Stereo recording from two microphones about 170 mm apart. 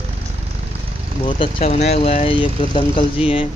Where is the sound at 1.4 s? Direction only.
40° left (ahead or behind).